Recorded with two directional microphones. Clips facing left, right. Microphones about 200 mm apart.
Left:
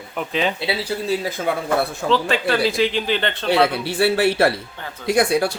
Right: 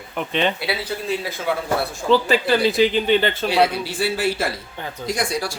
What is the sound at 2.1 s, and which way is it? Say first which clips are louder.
Speech: right 4 dB; centre (ahead or behind).